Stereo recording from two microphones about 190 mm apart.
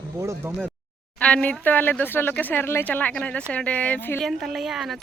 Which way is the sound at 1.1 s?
5° left (ahead or behind).